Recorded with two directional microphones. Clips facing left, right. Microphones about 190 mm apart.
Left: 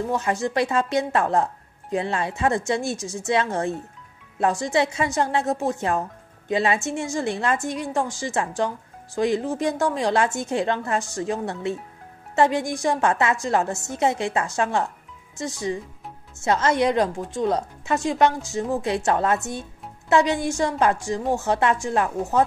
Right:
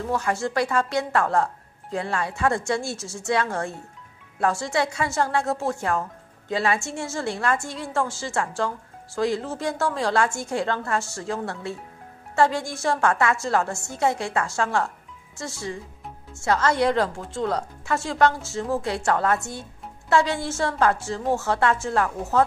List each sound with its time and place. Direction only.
0.0 s a woman's voice: 20° left (ahead or behind)